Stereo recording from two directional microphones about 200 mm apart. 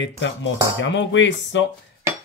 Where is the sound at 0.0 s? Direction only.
65° left (ahead or behind).